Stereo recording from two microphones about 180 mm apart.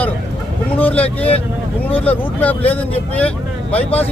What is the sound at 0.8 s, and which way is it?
Vehicle, 10° left (ahead or behind).